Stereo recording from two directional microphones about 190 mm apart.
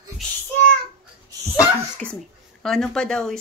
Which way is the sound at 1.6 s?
5° left (ahead or behind).